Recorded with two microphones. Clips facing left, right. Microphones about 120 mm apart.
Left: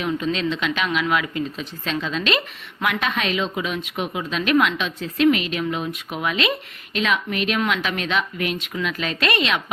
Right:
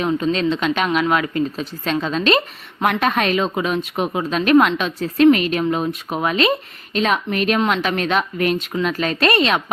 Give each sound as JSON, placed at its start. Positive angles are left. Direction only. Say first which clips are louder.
{"t": 0.0, "sound": "a woman's voice", "louder": "right 4 dB", "side_deg": -40}